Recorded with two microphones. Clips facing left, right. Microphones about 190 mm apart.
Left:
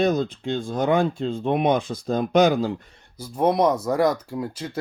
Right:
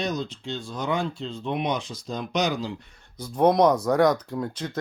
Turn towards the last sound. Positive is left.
turn(degrees=5)  # may be behind; listen again after turning